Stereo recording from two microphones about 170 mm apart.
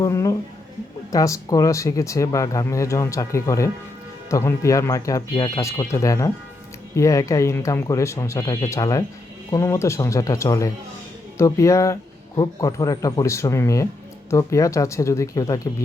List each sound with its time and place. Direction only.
0.0 s speech: 20° left (ahead or behind)